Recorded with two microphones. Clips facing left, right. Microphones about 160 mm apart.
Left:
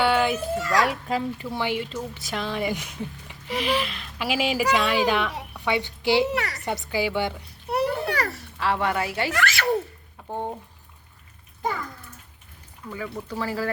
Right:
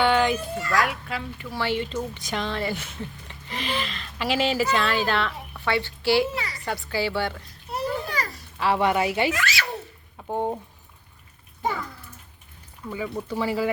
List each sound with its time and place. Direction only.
0.0 s children playing: 5° left (ahead or behind)
0.9 s a child's voice: 35° left (ahead or behind)
1.5 s a woman's voice: 15° left (ahead or behind)
6.3 s speech: 70° left (ahead or behind)
6.7 s speech: 20° left (ahead or behind)
7.7 s a sound: 65° left (ahead or behind)
8.5 s speech: 5° right (ahead or behind)
8.8 s speech: 20° right (ahead or behind)
9.3 s speech: 55° left (ahead or behind)
10.2 s speech: 15° right (ahead or behind)
12.9 s speech: 15° right (ahead or behind)